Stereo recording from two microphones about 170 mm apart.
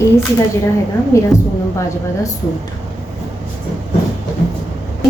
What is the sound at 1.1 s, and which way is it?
Speech, 15° left (ahead or behind).